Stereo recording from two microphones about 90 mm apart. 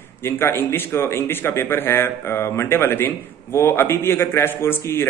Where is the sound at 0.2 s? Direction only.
25° left (ahead or behind).